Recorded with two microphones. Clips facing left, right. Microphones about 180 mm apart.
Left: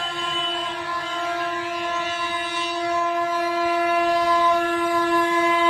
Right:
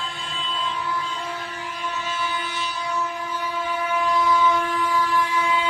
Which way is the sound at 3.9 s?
70° left (ahead or behind).